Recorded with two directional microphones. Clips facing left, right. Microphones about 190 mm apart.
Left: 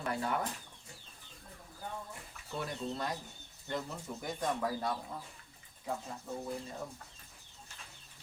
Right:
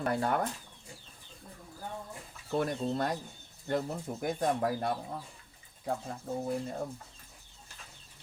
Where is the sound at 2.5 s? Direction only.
55° right (ahead or behind).